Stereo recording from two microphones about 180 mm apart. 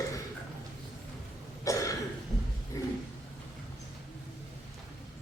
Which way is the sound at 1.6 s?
20° left (ahead or behind).